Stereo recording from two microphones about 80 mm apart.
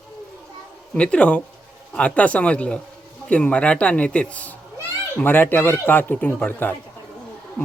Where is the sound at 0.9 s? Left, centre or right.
Centre.